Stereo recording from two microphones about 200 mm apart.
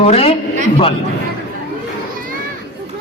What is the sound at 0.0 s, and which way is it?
Speech, 30° left (ahead or behind).